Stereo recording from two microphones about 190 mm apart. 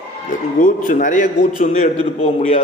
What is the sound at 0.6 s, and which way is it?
A man's voice, 45° left (ahead or behind).